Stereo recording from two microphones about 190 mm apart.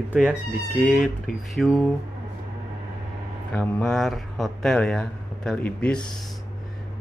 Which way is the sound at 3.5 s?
5° left (ahead or behind).